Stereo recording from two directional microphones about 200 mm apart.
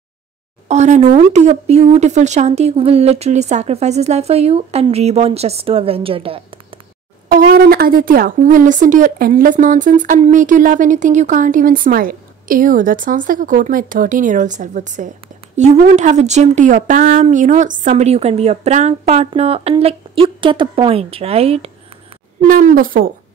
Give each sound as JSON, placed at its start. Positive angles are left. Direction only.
{"t": 0.7, "sound": "speech", "side_deg": -35}
{"t": 7.3, "sound": "speech", "side_deg": -50}
{"t": 22.5, "sound": "speech", "side_deg": -40}